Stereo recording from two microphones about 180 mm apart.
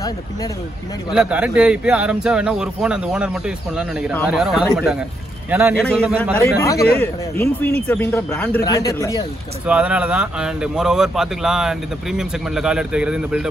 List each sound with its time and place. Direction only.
1.1 s a man's voice: 5° right (ahead or behind)
5.9 s speech: 5° left (ahead or behind)
9.7 s speech: 5° right (ahead or behind)